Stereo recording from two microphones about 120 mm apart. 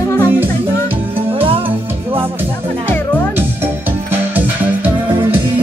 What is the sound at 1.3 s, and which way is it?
Music, 50° right (ahead or behind).